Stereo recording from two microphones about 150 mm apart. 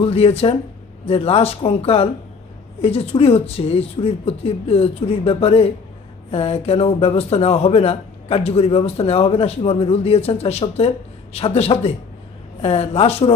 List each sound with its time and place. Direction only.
0.0 s a man's voice: 40° left (ahead or behind)